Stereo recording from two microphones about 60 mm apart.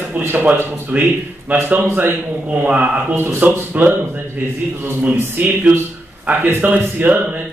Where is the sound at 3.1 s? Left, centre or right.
Right.